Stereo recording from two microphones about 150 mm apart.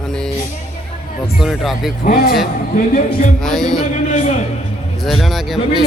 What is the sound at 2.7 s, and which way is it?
Speech, 60° left (ahead or behind).